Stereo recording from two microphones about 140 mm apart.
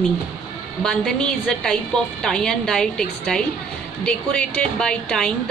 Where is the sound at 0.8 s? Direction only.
5° left (ahead or behind).